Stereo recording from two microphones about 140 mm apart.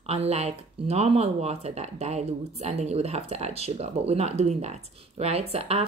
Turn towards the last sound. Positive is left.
turn(degrees=-45)  # may be behind; listen again after turning